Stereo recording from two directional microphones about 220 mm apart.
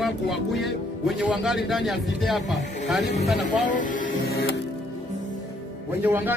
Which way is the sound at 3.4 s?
35° left (ahead or behind).